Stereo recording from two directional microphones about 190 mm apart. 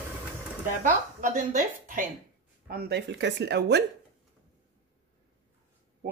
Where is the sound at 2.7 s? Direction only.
55° right (ahead or behind).